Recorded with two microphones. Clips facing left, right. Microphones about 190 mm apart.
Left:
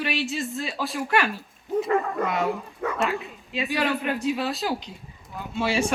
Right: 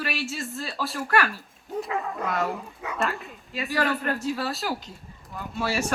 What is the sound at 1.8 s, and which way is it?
A woman's voice, centre (ahead or behind).